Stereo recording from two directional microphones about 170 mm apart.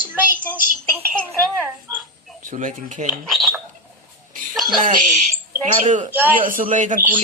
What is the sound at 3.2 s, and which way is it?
Speech, centre (ahead or behind).